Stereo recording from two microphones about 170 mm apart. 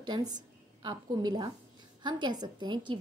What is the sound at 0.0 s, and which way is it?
Speech, 25° right (ahead or behind).